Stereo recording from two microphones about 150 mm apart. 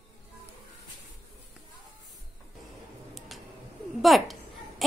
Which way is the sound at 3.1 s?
Centre (ahead or behind).